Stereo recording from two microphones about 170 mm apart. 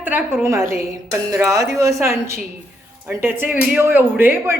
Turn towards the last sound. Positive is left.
turn(degrees=-10)  # may be behind; listen again after turning